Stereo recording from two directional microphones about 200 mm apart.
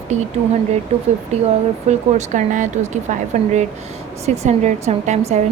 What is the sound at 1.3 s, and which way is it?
Speech, 30° right (ahead or behind).